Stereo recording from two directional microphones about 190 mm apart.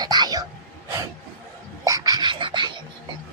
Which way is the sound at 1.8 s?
20° right (ahead or behind).